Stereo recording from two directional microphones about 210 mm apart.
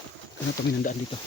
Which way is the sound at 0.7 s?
40° left (ahead or behind).